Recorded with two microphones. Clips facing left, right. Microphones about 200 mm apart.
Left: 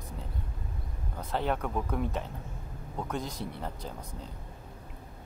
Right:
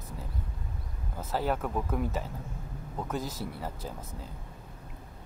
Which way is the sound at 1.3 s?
5° right (ahead or behind).